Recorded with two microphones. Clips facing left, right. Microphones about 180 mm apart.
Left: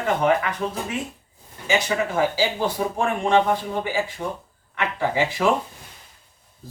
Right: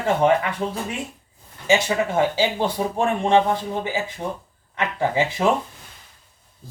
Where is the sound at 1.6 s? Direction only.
25° right (ahead or behind).